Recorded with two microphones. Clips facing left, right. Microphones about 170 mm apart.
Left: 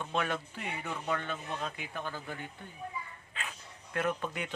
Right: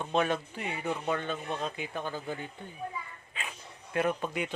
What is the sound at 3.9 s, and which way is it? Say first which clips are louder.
Speech: right 4 dB; 15° right (ahead or behind).